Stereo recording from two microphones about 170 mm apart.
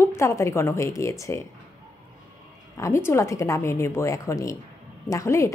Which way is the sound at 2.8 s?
15° left (ahead or behind).